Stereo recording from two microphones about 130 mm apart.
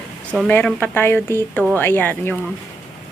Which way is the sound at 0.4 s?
5° left (ahead or behind).